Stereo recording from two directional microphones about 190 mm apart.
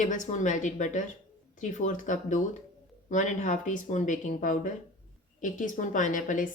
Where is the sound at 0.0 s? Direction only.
40° left (ahead or behind).